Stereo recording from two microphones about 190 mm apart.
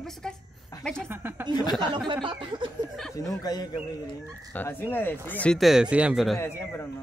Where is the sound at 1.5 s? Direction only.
20° left (ahead or behind).